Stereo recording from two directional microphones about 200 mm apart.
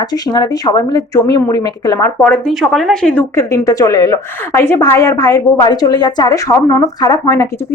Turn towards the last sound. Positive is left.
turn(degrees=15)  # may be behind; listen again after turning